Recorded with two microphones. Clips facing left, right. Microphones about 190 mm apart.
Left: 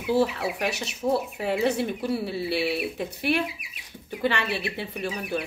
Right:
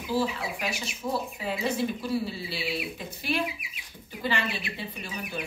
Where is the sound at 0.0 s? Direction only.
65° left (ahead or behind).